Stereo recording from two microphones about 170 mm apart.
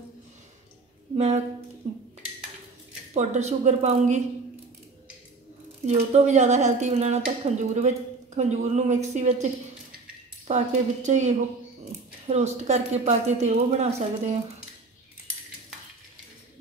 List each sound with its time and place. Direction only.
1.1 s a woman's voice: 35° right (ahead or behind)
3.2 s a woman's voice: 40° right (ahead or behind)
5.9 s a woman's voice: 40° right (ahead or behind)